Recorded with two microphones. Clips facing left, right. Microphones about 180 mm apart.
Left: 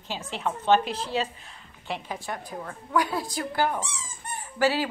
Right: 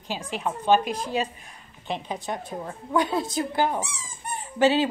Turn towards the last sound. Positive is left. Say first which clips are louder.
# right 4 dB
turn(degrees=-20)  # may be behind; listen again after turning